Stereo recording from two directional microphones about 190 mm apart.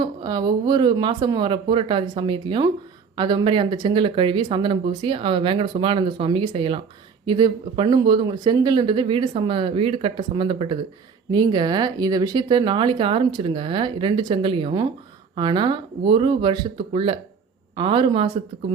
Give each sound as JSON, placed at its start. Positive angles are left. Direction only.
{"t": 0.0, "sound": "speech", "side_deg": -25}